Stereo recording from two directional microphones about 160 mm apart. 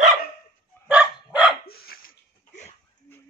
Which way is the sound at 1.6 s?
75° left (ahead or behind).